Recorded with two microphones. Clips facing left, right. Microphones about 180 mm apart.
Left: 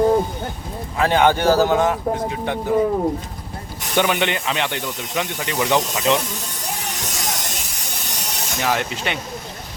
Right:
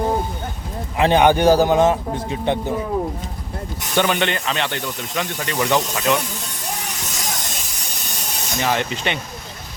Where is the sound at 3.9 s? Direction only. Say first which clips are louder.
Even; 10° left (ahead or behind).